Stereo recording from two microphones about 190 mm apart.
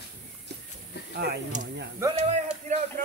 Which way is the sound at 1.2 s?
60° right (ahead or behind).